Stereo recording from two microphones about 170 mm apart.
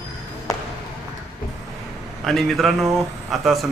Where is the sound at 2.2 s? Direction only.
Centre (ahead or behind).